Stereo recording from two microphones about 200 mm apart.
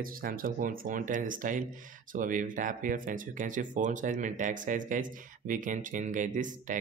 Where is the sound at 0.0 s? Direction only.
45° right (ahead or behind).